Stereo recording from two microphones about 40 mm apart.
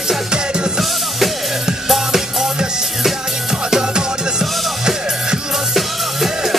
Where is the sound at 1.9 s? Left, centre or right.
Centre.